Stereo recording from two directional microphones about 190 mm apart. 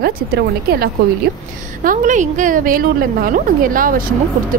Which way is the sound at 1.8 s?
45° right (ahead or behind).